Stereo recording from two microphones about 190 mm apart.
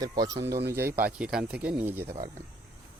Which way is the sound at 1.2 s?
5° right (ahead or behind).